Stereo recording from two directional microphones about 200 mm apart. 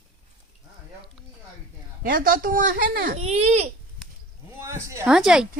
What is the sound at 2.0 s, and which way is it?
Speech, 45° right (ahead or behind).